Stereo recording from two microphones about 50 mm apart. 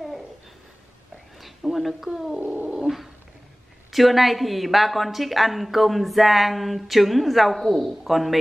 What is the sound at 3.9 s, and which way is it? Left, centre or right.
A woman's voice, centre.